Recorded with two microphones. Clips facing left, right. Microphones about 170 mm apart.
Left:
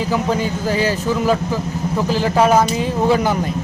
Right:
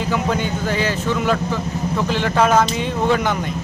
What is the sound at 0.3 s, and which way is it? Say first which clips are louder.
Speech: left 2 dB; 35° left (ahead or behind).